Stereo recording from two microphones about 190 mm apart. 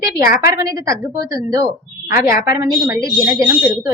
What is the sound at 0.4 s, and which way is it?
A woman's voice, 20° right (ahead or behind).